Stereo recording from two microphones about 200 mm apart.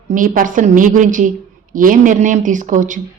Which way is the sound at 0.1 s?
40° right (ahead or behind).